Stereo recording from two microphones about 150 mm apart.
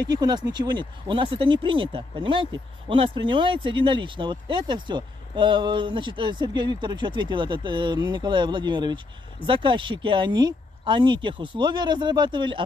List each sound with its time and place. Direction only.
0.0 s speech: 25° right (ahead or behind)